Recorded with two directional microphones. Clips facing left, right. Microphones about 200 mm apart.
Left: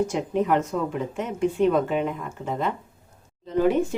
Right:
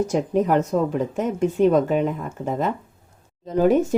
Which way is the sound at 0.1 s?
40° right (ahead or behind).